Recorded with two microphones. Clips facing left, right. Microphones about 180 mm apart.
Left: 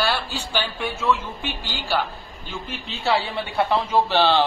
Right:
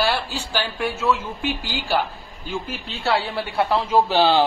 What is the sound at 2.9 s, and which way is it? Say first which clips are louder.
A man's voice: even; centre (ahead or behind).